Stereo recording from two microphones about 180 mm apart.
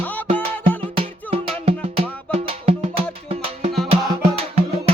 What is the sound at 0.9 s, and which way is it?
Music, 35° right (ahead or behind).